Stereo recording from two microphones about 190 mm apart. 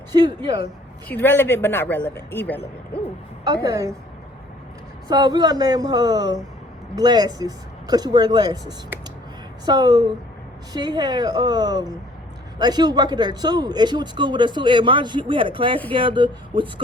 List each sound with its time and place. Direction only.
0.1 s speech: 20° right (ahead or behind)
1.0 s a man's voice: 10° left (ahead or behind)
3.4 s speech: 20° right (ahead or behind)
5.0 s speech: 20° right (ahead or behind)
9.6 s speech: 20° right (ahead or behind)